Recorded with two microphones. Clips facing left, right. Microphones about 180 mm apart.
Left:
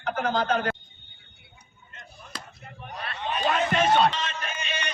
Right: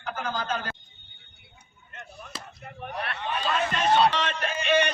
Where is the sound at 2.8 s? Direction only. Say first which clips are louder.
Right 4 dB; 65° right (ahead or behind).